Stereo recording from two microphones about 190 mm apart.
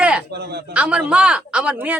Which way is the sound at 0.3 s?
60° right (ahead or behind).